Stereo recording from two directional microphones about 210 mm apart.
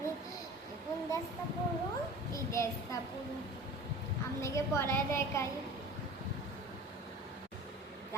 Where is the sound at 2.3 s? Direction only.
15° left (ahead or behind).